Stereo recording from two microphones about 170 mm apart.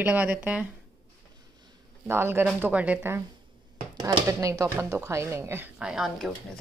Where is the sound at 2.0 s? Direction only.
15° right (ahead or behind).